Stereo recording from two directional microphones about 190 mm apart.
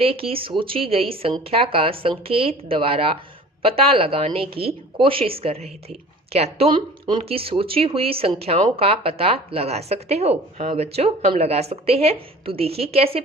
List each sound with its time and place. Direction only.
0.0 s a woman's voice: 30° right (ahead or behind)